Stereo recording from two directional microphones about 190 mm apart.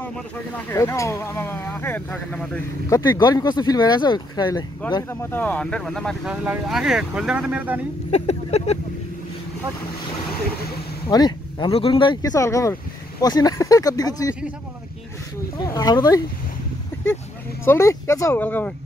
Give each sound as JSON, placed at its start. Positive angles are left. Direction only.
{"t": 0.7, "sound": "speech", "side_deg": 15}
{"t": 4.9, "sound": "speech", "side_deg": 10}
{"t": 8.1, "sound": "speech", "side_deg": 35}
{"t": 11.1, "sound": "speech", "side_deg": 20}
{"t": 15.5, "sound": "speech", "side_deg": 20}
{"t": 16.9, "sound": "a sound", "side_deg": 10}
{"t": 17.6, "sound": "speech", "side_deg": 15}